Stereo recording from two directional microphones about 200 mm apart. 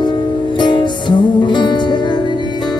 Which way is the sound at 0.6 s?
25° left (ahead or behind).